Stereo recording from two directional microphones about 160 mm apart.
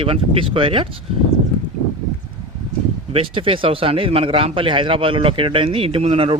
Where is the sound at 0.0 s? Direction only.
35° right (ahead or behind).